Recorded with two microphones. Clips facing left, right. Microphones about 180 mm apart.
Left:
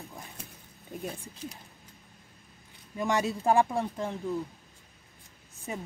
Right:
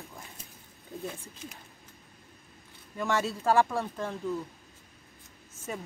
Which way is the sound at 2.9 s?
15° left (ahead or behind).